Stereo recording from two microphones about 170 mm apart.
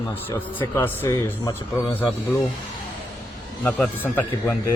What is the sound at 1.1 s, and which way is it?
Speech, 25° left (ahead or behind).